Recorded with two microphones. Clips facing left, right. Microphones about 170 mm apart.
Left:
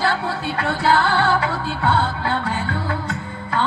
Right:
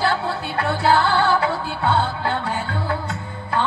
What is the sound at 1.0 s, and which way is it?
Music, 60° left (ahead or behind).